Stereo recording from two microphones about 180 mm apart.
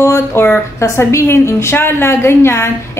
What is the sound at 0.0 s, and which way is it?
A woman's voice, 15° left (ahead or behind).